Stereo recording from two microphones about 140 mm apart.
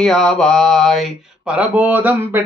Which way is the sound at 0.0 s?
5° left (ahead or behind).